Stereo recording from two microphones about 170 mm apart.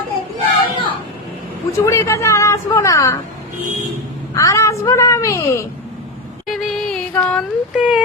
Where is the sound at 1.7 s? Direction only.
15° left (ahead or behind).